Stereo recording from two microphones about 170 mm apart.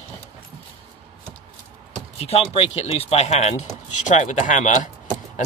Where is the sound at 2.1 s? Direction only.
35° left (ahead or behind).